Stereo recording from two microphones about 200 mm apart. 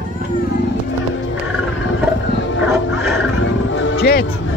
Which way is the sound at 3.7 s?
70° left (ahead or behind).